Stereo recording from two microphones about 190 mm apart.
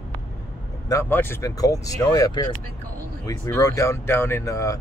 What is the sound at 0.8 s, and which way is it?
Speech, 15° left (ahead or behind).